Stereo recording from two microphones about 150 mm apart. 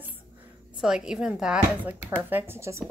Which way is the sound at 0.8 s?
5° right (ahead or behind).